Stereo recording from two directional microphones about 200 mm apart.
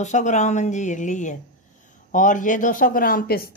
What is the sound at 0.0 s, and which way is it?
Speech, 35° left (ahead or behind).